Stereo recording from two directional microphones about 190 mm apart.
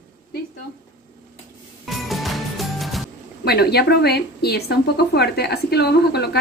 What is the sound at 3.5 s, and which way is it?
Speech, 60° left (ahead or behind).